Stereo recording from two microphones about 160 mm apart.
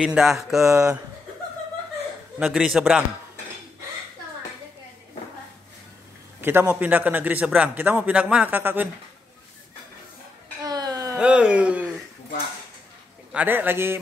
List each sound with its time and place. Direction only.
0.0 s speech: 5° right (ahead or behind)
2.3 s speech: 5° right (ahead or behind)
6.4 s a man's voice: 15° right (ahead or behind)
10.6 s a sound: 25° right (ahead or behind)
11.1 s speech: 5° right (ahead or behind)
13.3 s a man's voice: 10° right (ahead or behind)